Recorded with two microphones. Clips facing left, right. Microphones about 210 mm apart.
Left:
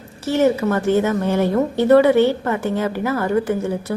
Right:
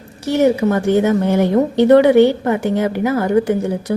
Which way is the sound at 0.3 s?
15° right (ahead or behind).